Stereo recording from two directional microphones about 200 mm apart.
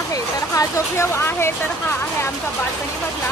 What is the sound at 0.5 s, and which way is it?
Speech, 10° left (ahead or behind).